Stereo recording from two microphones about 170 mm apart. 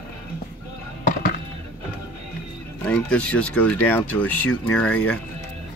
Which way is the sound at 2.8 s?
10° left (ahead or behind).